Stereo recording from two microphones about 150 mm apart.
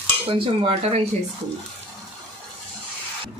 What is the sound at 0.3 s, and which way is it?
Cutlery, 40° right (ahead or behind).